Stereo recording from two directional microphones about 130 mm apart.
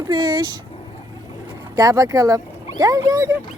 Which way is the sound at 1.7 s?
25° right (ahead or behind).